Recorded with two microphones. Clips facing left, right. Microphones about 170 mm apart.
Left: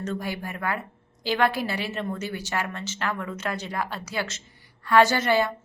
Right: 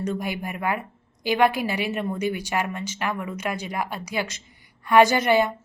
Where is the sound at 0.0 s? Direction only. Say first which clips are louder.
Right 3 dB; 15° right (ahead or behind).